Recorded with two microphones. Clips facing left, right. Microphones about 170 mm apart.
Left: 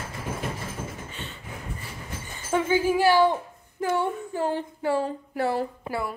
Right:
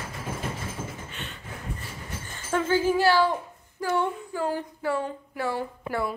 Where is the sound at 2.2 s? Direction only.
15° left (ahead or behind); by 5.7 s 35° left (ahead or behind).